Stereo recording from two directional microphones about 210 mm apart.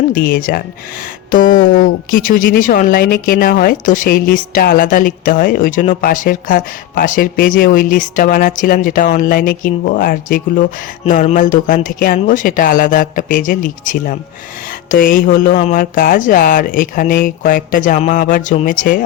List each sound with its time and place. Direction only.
0.1 s speech: 45° left (ahead or behind)